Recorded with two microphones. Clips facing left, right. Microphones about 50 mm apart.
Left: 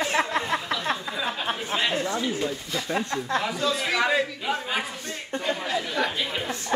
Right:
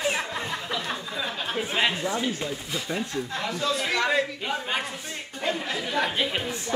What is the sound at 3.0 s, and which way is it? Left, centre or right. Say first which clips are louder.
Speech: left 3 dB; left.